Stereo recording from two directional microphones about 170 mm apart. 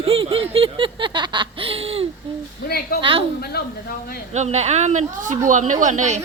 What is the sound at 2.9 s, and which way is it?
Speech, 65° left (ahead or behind).